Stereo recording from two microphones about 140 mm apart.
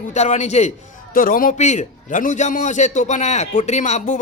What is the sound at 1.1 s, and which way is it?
A man's voice, 85° left.